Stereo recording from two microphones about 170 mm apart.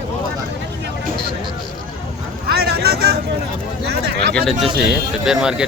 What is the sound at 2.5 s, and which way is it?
Vehicle, 70° right (ahead or behind).